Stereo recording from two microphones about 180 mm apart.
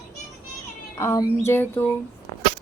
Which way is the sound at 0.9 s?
15° left (ahead or behind).